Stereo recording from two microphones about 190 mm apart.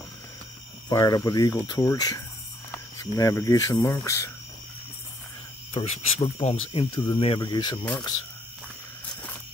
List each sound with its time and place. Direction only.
0.8 s speech: 20° left (ahead or behind)
5.7 s speech: 30° left (ahead or behind)